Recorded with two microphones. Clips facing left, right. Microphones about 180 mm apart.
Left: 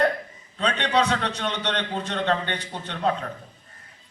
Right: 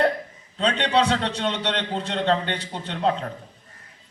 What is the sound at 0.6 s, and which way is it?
A man's voice, 30° right (ahead or behind).